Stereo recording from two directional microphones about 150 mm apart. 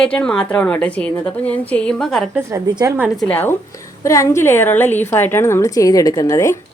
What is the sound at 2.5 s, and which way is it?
Speech, 25° right (ahead or behind).